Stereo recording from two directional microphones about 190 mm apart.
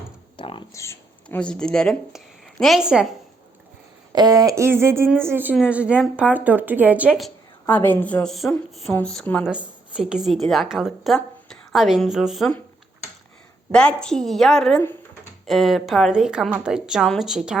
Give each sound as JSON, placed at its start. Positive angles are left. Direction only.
{"t": 0.3, "sound": "a sound", "side_deg": 25}
{"t": 0.7, "sound": "speech", "side_deg": 15}
{"t": 4.1, "sound": "a woman's voice", "side_deg": -20}
{"t": 9.5, "sound": "a woman's voice", "side_deg": -5}
{"t": 13.7, "sound": "a woman's voice", "side_deg": 5}